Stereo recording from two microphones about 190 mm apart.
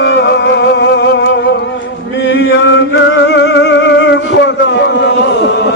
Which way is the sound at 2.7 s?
70° left (ahead or behind).